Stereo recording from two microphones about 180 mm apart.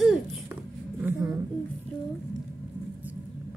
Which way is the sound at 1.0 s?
15° right (ahead or behind).